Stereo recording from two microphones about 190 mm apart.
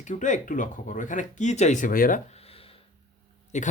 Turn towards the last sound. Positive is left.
turn(degrees=40)  # may be behind; listen again after turning